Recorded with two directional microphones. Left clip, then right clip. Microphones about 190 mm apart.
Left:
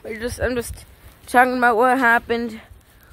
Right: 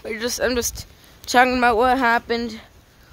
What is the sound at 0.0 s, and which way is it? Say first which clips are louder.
Speech: right 2 dB; 10° right (ahead or behind).